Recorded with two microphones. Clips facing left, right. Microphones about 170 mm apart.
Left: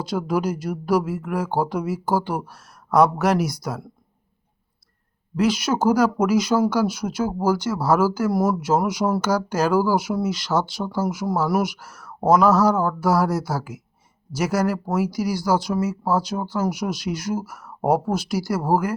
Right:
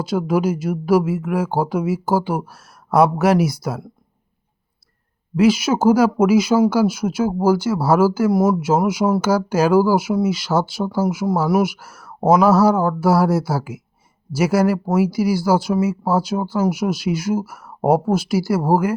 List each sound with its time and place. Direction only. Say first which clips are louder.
0.0 s speech: right 4 dB; 5° right (ahead or behind)
5.4 s speech: right 5 dB; 5° right (ahead or behind)